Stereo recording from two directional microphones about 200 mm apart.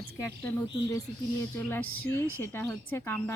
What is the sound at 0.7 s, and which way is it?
A woman's voice, 15° left (ahead or behind).